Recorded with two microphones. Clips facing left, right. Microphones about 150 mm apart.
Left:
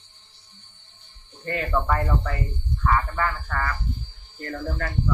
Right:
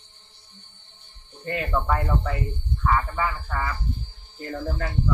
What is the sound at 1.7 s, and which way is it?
Speech, centre (ahead or behind).